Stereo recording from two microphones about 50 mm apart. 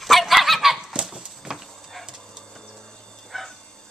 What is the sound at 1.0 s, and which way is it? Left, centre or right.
Horse, centre.